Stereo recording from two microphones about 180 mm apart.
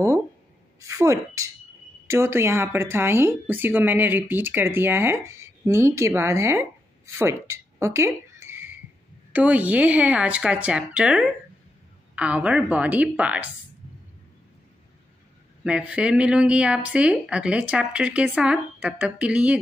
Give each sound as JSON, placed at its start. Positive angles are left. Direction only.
{"t": 0.7, "sound": "speech", "side_deg": -15}
{"t": 7.2, "sound": "a sound", "side_deg": -15}
{"t": 9.3, "sound": "speech", "side_deg": -10}
{"t": 15.6, "sound": "speech", "side_deg": -5}